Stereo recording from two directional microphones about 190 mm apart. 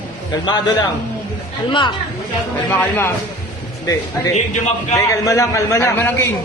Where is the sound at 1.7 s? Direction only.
25° left (ahead or behind).